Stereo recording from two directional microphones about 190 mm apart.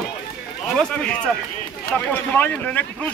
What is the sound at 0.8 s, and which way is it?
Speech, 5° left (ahead or behind).